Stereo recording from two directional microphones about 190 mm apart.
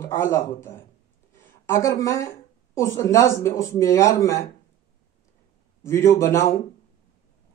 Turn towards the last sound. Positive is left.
turn(degrees=15)  # may be behind; listen again after turning